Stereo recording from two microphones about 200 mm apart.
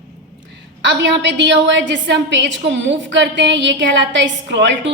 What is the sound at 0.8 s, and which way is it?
A woman's voice, 65° right (ahead or behind).